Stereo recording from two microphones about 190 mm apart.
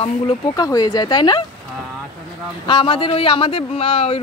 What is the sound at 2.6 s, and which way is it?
Speech, 25° left (ahead or behind).